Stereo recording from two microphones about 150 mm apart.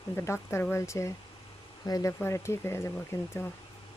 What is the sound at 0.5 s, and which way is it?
Speech, 15° left (ahead or behind).